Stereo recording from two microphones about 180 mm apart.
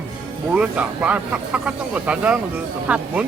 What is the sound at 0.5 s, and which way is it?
Speech, 5° right (ahead or behind).